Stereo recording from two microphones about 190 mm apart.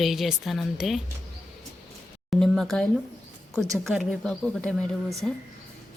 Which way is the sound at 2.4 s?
Centre (ahead or behind).